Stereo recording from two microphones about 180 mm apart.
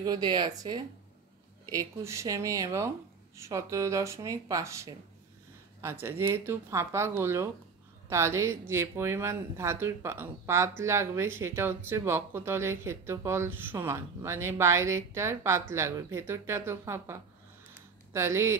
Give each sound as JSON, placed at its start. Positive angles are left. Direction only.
{"t": 0.0, "sound": "speech", "side_deg": -25}